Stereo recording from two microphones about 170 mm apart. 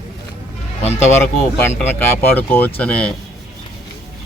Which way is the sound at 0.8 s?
40° left (ahead or behind).